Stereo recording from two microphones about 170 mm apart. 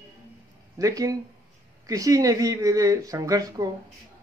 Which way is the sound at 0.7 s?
20° right (ahead or behind).